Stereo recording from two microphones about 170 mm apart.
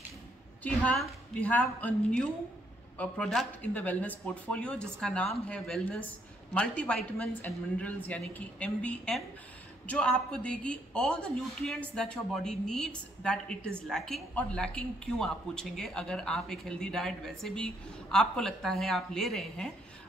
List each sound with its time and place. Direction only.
0.7 s a woman's voice: 10° left (ahead or behind)